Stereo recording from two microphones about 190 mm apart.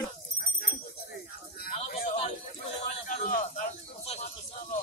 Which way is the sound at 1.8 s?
35° left (ahead or behind).